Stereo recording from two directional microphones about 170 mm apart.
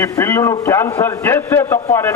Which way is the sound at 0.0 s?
15° left (ahead or behind).